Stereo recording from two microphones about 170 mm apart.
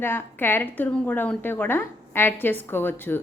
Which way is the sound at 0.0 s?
15° left (ahead or behind).